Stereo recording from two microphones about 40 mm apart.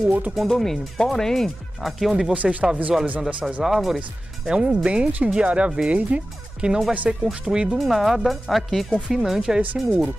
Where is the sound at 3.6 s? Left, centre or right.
Centre.